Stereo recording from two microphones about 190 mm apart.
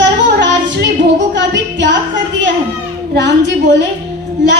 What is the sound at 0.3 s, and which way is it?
Female singing, 65° right (ahead or behind).